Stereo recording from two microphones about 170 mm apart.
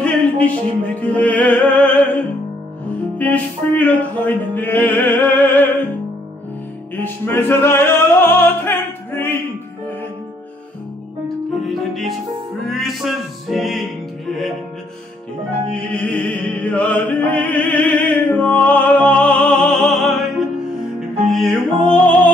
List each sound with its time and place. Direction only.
0.0 s music: 10° left (ahead or behind)
3.2 s music: 10° left (ahead or behind)
7.0 s music: 15° left (ahead or behind)
11.6 s music: centre (ahead or behind)
15.7 s music: 5° left (ahead or behind)